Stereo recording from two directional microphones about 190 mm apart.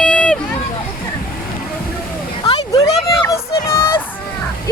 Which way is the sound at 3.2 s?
15° left (ahead or behind).